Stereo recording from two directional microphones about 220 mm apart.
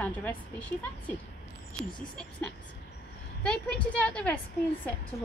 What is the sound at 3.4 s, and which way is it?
Speech, 5° left (ahead or behind).